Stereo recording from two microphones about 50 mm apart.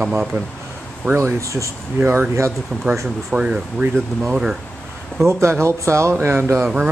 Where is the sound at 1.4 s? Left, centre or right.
Right.